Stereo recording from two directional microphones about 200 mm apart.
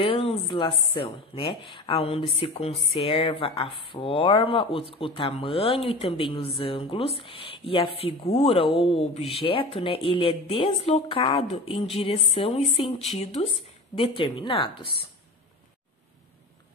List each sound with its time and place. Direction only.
0.0 s speech: 25° left (ahead or behind)
12.7 s a sound: 30° left (ahead or behind)
13.9 s speech: 25° left (ahead or behind)